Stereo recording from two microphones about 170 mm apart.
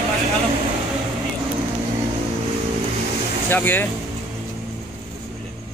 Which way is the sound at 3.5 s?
10° left (ahead or behind).